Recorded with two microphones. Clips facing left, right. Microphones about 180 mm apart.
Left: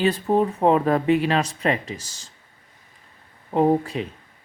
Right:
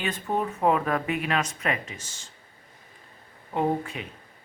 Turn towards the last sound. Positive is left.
turn(degrees=35)  # may be behind; listen again after turning